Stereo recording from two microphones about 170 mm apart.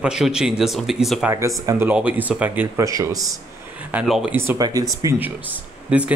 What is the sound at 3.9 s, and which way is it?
Speech, 5° right (ahead or behind).